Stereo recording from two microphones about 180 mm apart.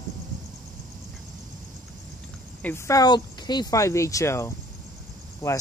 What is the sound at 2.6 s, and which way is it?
Speech, 15° left (ahead or behind).